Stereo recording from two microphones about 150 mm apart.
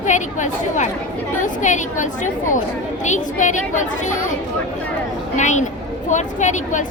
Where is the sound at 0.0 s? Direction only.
55° left (ahead or behind).